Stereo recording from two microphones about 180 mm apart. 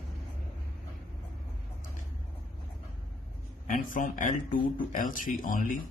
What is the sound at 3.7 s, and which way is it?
Speech, 50° left (ahead or behind).